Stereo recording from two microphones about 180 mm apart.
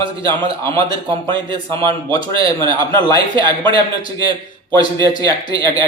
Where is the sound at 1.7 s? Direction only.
20° left (ahead or behind).